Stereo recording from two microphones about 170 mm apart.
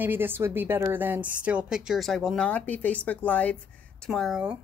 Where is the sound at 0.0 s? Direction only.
10° right (ahead or behind).